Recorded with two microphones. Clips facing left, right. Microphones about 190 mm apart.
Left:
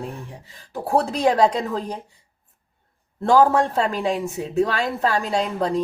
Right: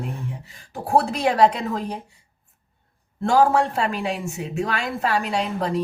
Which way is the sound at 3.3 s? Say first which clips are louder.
Left 2 dB; 35° left (ahead or behind).